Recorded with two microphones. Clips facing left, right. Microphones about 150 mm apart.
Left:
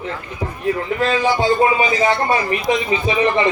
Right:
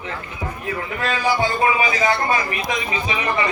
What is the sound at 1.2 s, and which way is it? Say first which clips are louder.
A man's voice: left 2 dB; 25° left (ahead or behind).